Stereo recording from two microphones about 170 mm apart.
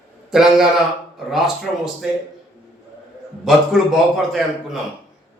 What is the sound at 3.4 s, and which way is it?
A man's voice, centre (ahead or behind).